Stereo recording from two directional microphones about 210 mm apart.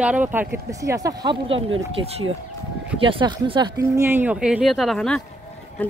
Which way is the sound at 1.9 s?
30° right (ahead or behind).